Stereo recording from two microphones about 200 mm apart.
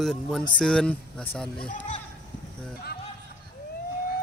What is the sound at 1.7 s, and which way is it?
Speech, 35° left (ahead or behind).